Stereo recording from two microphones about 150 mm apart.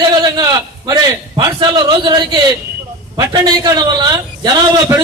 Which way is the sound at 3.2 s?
25° right (ahead or behind).